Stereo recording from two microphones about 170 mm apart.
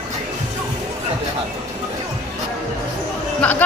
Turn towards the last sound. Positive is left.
turn(degrees=5)  # may be behind; listen again after turning